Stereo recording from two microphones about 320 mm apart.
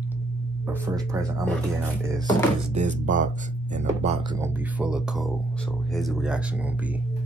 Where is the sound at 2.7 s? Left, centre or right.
Right.